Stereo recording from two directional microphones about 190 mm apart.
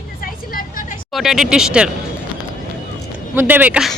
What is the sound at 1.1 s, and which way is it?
Speech, centre (ahead or behind).